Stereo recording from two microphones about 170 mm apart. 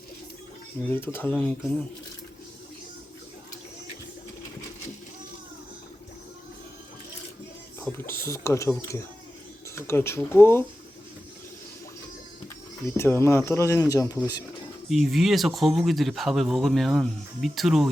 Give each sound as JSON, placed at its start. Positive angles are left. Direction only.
{"t": 0.9, "sound": "speech", "side_deg": 10}
{"t": 7.9, "sound": "speech", "side_deg": 15}
{"t": 9.7, "sound": "speech", "side_deg": 15}
{"t": 12.8, "sound": "speech", "side_deg": 15}
{"t": 14.8, "sound": "speech", "side_deg": 0}